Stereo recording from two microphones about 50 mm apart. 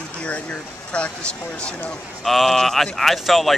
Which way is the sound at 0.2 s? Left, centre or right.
Left.